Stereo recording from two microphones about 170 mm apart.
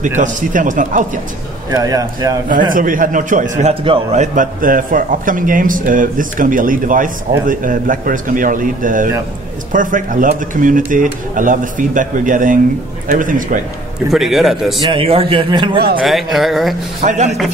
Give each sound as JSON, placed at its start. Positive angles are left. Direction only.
{"t": 0.0, "sound": "a man's voice", "side_deg": -50}
{"t": 1.7, "sound": "a man's voice", "side_deg": -20}
{"t": 2.7, "sound": "a man's voice", "side_deg": -55}
{"t": 3.8, "sound": "a man's voice", "side_deg": -35}
{"t": 14.1, "sound": "speech", "side_deg": 0}
{"t": 14.9, "sound": "a man's voice", "side_deg": -35}
{"t": 16.0, "sound": "speech", "side_deg": 0}
{"t": 17.0, "sound": "a man's voice", "side_deg": -45}